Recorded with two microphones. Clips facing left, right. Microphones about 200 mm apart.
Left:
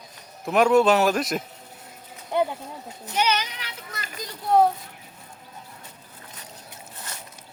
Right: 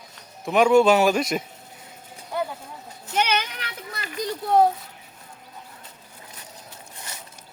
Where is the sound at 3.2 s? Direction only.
55° right (ahead or behind).